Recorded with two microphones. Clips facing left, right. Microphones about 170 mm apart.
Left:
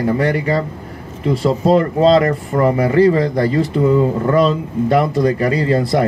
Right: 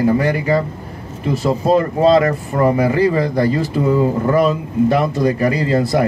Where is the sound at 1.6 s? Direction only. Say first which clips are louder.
Left 1 dB; 25° left (ahead or behind).